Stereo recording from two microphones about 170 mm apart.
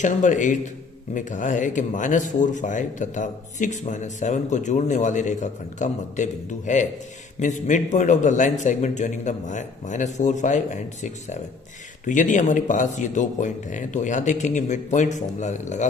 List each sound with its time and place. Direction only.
0.0 s speech: 45° left (ahead or behind)